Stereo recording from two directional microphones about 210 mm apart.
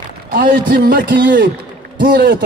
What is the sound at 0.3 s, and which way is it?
A man's voice, 40° right (ahead or behind).